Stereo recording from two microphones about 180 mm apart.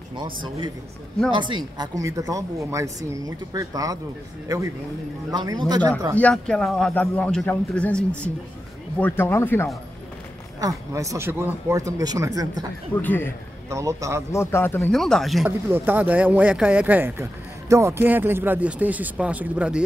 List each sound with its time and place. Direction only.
0.1 s speech: 25° right (ahead or behind)
6.1 s speech: 5° left (ahead or behind)
10.6 s speech: 20° right (ahead or behind)
12.9 s speech: 10° left (ahead or behind)
13.7 s speech: 15° right (ahead or behind)
14.3 s speech: 15° left (ahead or behind)
15.0 s speech: centre (ahead or behind)
15.7 s speech: 10° right (ahead or behind)